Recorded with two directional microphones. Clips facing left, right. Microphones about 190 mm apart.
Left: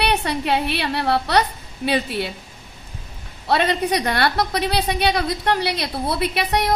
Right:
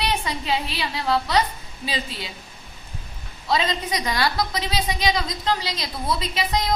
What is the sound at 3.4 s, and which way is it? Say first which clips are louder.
A woman's voice: left 4 dB; 65° left (ahead or behind).